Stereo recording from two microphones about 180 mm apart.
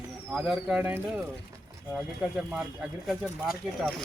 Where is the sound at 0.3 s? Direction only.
5° right (ahead or behind).